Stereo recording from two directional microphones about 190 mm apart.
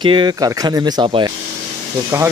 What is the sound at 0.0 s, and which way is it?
Speech, 25° right (ahead or behind).